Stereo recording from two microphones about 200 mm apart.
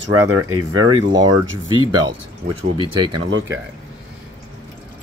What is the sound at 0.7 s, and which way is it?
Speech, 20° right (ahead or behind).